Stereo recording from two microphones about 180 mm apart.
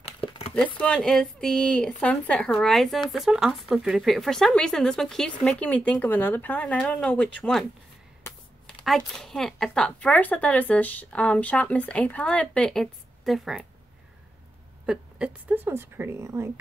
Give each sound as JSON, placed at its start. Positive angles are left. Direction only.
{"t": 0.2, "sound": "a sound", "side_deg": 30}
{"t": 0.7, "sound": "speech", "side_deg": 5}
{"t": 8.8, "sound": "speech", "side_deg": 0}
{"t": 14.9, "sound": "a woman's voice", "side_deg": -5}